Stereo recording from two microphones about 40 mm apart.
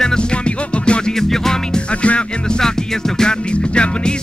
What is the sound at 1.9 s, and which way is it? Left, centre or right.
Music, left.